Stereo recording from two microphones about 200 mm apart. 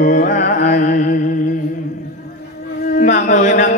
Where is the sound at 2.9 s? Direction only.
40° left (ahead or behind).